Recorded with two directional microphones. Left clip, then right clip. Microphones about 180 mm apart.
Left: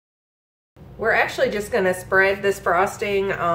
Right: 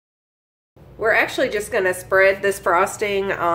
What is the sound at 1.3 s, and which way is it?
A woman's voice, 40° right (ahead or behind).